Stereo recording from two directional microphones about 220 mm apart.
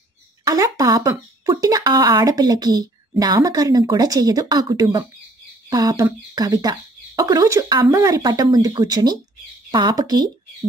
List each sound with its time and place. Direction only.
0.5 s speech: 15° right (ahead or behind)